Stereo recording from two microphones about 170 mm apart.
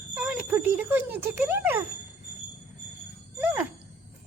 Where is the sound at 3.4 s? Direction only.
10° right (ahead or behind).